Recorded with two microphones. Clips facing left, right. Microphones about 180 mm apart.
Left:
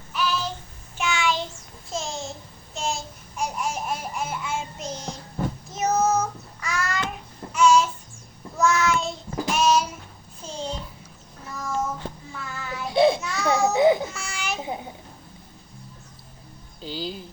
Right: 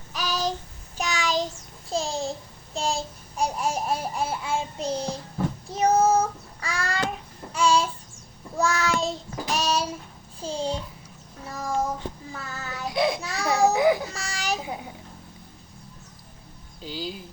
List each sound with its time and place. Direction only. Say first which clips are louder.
0.1 s child singing: left 1 dB; 40° right (ahead or behind)
2.7 s babbling: right 2 dB; 35° right (ahead or behind)
5.6 s child singing: right 3 dB; 30° right (ahead or behind)
10.4 s a sound: right 4 dB; 30° right (ahead or behind)
11.5 s child singing: right 1 dB; 35° right (ahead or behind)
12.9 s child singing: left 6 dB; 25° left (ahead or behind)
13.2 s a sound: left 2 dB; 30° right (ahead or behind)
13.7 s babbling: left 3 dB; 25° left (ahead or behind)
14.1 s a sound: right 2 dB; 35° right (ahead or behind)
16.8 s speech: left 2 dB; 5° right (ahead or behind)